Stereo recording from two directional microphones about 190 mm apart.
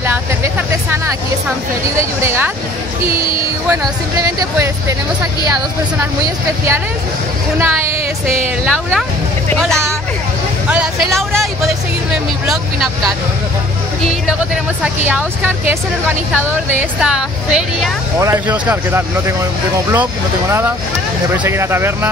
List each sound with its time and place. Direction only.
0.0 s vehicle: 10° right (ahead or behind)
2.0 s speech: 10° right (ahead or behind)
4.2 s speech: 15° right (ahead or behind)
7.5 s speech: 10° right (ahead or behind)
8.6 s speech: centre (ahead or behind)
10.7 s speech: 5° right (ahead or behind)
17.0 s speech: 5° right (ahead or behind)